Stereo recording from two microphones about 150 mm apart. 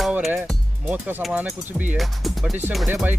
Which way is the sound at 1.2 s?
5° right (ahead or behind).